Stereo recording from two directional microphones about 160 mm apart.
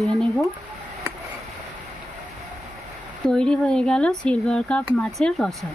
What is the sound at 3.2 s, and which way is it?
Speech, 5° left (ahead or behind).